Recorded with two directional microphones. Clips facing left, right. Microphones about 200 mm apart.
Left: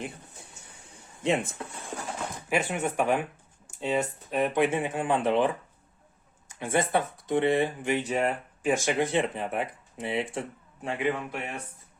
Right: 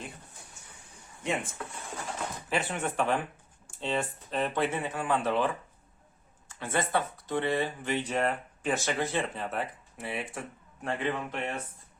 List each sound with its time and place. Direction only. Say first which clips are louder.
1.2 s speech: left 6 dB; 25° left (ahead or behind)
2.5 s speech: left 4 dB; 10° left (ahead or behind)
6.5 s speech: left 4 dB; 15° left (ahead or behind)